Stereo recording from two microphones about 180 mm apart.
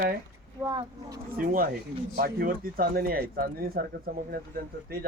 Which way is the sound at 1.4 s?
55° right (ahead or behind).